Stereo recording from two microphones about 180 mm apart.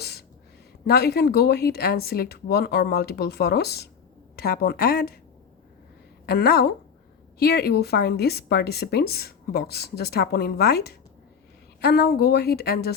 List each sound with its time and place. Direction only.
0.0 s a sound: 60° left (ahead or behind)
0.9 s a woman's voice: 60° left (ahead or behind)
6.2 s a woman's voice: 60° left (ahead or behind)